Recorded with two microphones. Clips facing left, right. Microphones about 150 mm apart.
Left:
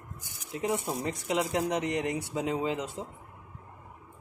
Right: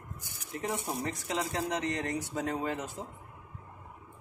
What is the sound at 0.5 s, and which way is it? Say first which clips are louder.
Speech: left 4 dB; 20° left (ahead or behind).